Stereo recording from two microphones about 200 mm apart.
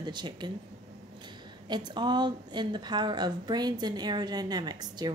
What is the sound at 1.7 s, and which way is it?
A woman's voice, 20° right (ahead or behind).